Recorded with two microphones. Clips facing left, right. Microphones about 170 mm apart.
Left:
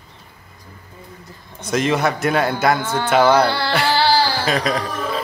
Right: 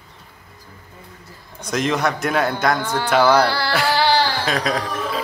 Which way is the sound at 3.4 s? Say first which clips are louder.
Left 1 dB; 20° left (ahead or behind).